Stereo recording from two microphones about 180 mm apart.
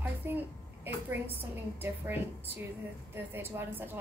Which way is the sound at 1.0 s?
10° right (ahead or behind).